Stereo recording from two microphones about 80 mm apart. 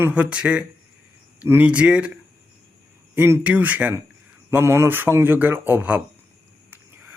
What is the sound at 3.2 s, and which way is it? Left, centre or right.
Speech, right.